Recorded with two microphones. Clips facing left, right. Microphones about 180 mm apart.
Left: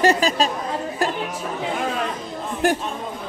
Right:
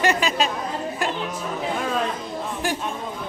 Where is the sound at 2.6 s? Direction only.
55° left (ahead or behind).